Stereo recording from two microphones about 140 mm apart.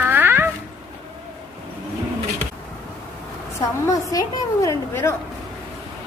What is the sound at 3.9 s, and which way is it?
A woman's voice, 25° left (ahead or behind).